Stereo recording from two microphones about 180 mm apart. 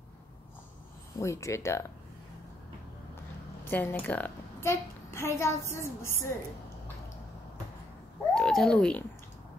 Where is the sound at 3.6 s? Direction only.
10° left (ahead or behind).